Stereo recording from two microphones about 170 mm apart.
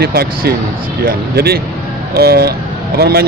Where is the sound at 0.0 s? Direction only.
65° right (ahead or behind).